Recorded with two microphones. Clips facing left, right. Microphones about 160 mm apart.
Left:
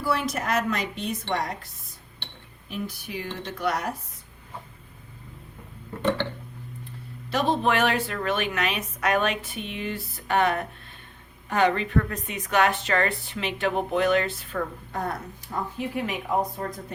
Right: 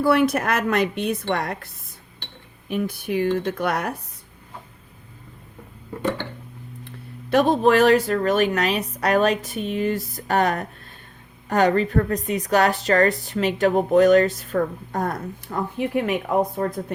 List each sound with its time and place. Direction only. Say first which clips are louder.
0.0 s a woman's voice: right 8 dB; 60° right (ahead or behind)
7.3 s a woman's voice: right 7 dB; 50° right (ahead or behind)
15.8 s a woman's voice: right 8 dB; 60° right (ahead or behind)